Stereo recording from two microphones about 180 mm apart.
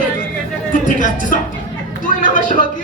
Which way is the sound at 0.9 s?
50° left (ahead or behind).